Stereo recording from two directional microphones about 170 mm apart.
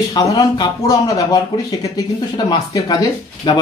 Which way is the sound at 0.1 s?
25° left (ahead or behind).